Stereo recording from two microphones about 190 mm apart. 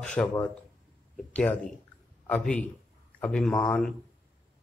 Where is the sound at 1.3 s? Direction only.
5° left (ahead or behind).